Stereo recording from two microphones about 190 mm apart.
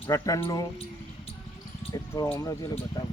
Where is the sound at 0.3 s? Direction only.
25° left (ahead or behind).